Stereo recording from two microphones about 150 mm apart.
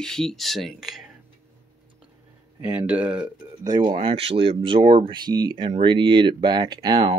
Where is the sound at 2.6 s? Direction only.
10° right (ahead or behind).